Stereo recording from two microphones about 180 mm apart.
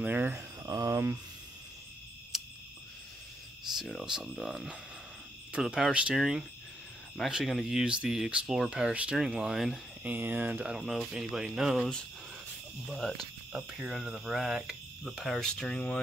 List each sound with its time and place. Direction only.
0.0 s speech: 10° right (ahead or behind)
2.3 s cricket: centre (ahead or behind)
3.7 s speech: centre (ahead or behind)